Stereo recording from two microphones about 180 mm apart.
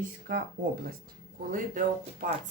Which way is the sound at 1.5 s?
45° right (ahead or behind).